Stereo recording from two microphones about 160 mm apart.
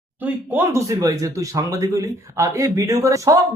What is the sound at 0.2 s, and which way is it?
Speech, 15° right (ahead or behind).